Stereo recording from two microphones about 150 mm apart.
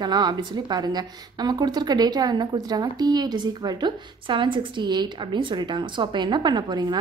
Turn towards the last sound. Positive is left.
turn(degrees=-30)  # may be behind; listen again after turning